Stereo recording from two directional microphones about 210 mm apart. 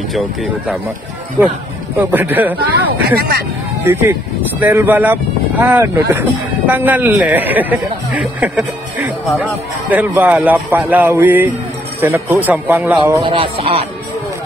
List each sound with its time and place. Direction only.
0.1 s speech: centre (ahead or behind)
2.0 s speech: 10° right (ahead or behind)
3.2 s speech: 45° right (ahead or behind)
3.8 s speech: 10° right (ahead or behind)
13.2 s speech: 25° right (ahead or behind)